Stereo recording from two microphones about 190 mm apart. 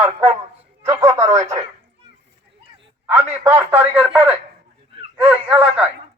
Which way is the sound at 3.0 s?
15° right (ahead or behind).